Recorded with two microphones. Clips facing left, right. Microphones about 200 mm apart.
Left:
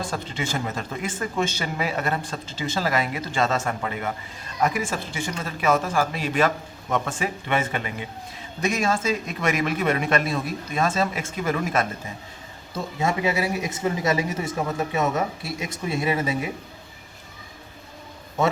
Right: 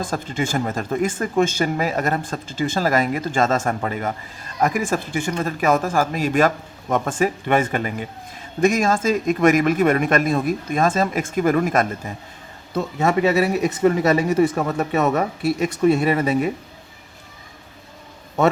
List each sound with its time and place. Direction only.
0.1 s speech: 45° right (ahead or behind)
12.7 s speech: 65° right (ahead or behind)